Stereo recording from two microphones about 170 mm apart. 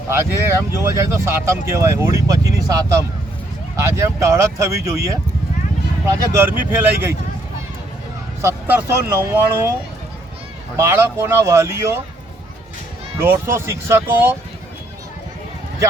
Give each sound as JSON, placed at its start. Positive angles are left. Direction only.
{"t": 0.1, "sound": "speech", "side_deg": -15}
{"t": 8.4, "sound": "speech", "side_deg": -15}
{"t": 10.8, "sound": "speech", "side_deg": -15}
{"t": 13.1, "sound": "speech", "side_deg": -15}